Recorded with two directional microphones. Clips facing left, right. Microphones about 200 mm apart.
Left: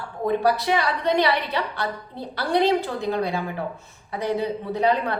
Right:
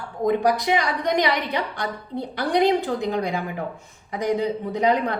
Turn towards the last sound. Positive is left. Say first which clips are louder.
# right 1 dB
turn(degrees=-15)  # may be behind; listen again after turning